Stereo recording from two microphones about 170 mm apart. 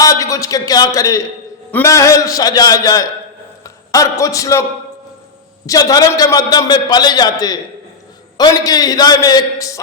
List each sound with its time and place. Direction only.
0.0 s a man's voice: 20° left (ahead or behind)
5.6 s a man's voice: 20° left (ahead or behind)